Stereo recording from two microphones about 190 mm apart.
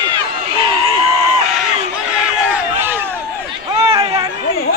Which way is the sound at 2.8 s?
10° right (ahead or behind).